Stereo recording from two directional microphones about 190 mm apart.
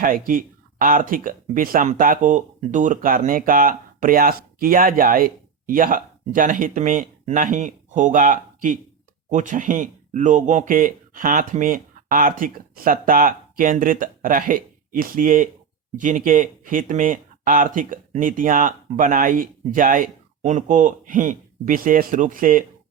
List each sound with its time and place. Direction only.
0.0 s speech: 45° right (ahead or behind)